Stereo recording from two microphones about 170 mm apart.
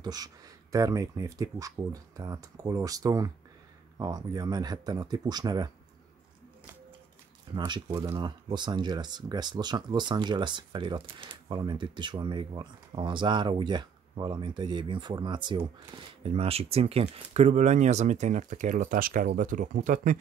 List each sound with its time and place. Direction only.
0.0 s speech: 20° right (ahead or behind)
7.5 s speech: 25° right (ahead or behind); by 20.2 s 50° right (ahead or behind)